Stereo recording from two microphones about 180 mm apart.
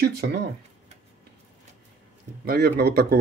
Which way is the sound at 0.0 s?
60° right (ahead or behind).